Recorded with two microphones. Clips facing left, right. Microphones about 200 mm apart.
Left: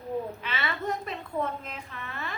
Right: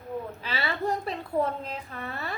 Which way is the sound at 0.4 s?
35° right (ahead or behind).